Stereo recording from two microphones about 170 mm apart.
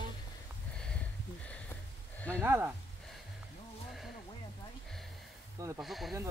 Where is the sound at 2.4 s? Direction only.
15° right (ahead or behind).